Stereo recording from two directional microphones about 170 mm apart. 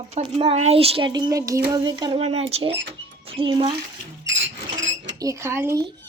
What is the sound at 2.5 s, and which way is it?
Speech, 35° right (ahead or behind).